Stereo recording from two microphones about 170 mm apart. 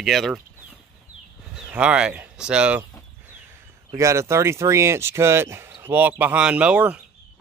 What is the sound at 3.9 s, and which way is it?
Speech, 20° right (ahead or behind).